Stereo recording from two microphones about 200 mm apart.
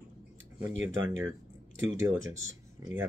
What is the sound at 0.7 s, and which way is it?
Speech, 75° right (ahead or behind).